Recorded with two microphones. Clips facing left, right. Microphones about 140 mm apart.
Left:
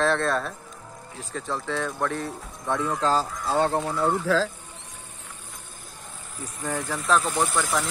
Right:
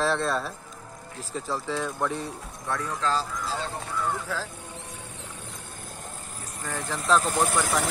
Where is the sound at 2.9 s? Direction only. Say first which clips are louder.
Left 3 dB; 40° left (ahead or behind).